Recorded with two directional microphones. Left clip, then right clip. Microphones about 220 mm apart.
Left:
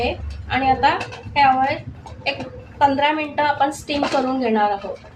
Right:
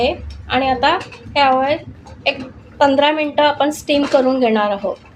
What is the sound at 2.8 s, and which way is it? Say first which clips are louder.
A woman's voice: right 4 dB; 45° right (ahead or behind).